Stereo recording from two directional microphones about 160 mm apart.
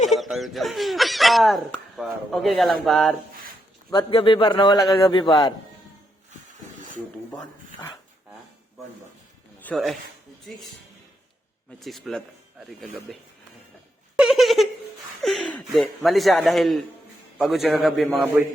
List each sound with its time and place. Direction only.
0.1 s speech: centre (ahead or behind)
3.9 s a man's voice: 35° left (ahead or behind)
4.9 s speech: 20° left (ahead or behind)
9.6 s speech: centre (ahead or behind)
11.8 s speech: centre (ahead or behind)
14.2 s speech: centre (ahead or behind)